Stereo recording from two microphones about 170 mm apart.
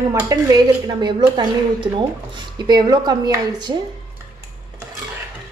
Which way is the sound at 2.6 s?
25° right (ahead or behind).